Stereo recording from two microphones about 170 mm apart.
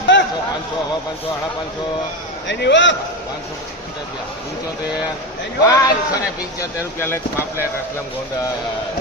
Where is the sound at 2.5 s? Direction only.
90° left.